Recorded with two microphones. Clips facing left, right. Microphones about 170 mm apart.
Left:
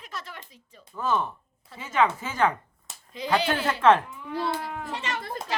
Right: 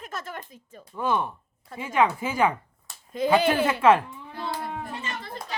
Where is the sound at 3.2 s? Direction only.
50° right (ahead or behind).